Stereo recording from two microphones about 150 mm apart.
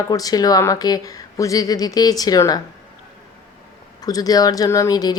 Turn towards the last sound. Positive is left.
turn(degrees=25)  # may be behind; listen again after turning